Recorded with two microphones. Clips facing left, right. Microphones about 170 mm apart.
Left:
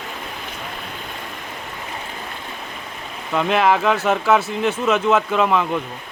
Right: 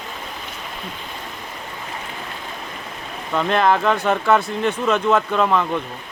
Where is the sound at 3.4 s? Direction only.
5° left (ahead or behind).